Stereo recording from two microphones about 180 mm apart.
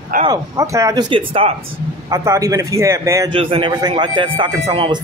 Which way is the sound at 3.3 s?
30° right (ahead or behind).